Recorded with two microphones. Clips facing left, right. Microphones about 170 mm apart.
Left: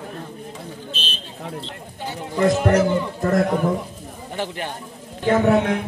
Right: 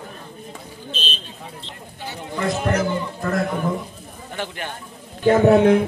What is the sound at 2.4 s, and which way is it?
A man's voice, 40° left (ahead or behind).